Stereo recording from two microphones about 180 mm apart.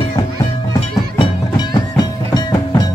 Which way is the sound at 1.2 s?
25° left (ahead or behind).